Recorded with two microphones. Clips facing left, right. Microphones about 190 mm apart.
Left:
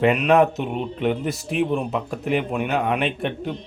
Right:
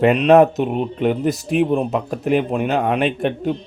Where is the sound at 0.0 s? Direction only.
35° right (ahead or behind).